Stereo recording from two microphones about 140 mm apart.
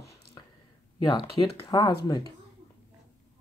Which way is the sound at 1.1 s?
35° left (ahead or behind).